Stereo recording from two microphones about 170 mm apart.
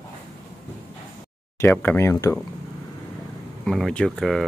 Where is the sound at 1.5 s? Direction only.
10° left (ahead or behind).